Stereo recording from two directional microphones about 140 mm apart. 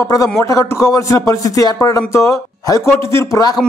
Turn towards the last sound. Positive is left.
turn(degrees=25)  # may be behind; listen again after turning